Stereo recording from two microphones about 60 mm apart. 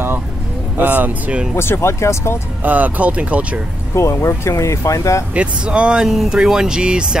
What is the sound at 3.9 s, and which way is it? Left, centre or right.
Speech, left.